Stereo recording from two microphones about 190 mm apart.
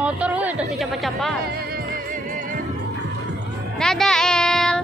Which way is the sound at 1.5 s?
55° right (ahead or behind).